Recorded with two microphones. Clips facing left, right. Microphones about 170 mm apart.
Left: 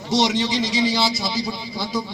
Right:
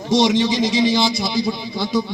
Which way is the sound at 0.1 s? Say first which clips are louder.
Right 4 dB; 15° right (ahead or behind).